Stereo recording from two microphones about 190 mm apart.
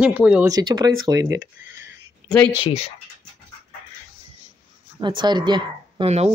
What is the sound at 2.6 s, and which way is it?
Speech, 30° left (ahead or behind).